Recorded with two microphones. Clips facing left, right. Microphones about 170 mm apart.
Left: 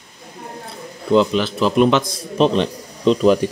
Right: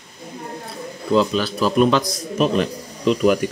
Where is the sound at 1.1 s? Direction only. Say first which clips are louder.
Left 2 dB; 20° left (ahead or behind).